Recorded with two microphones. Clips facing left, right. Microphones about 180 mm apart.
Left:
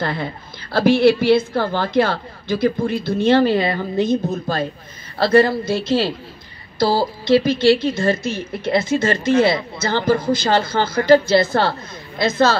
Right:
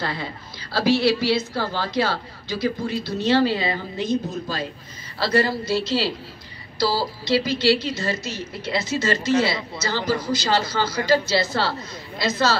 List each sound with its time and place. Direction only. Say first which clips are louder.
0.0 s a woman's voice: left 5 dB; 55° left (ahead or behind)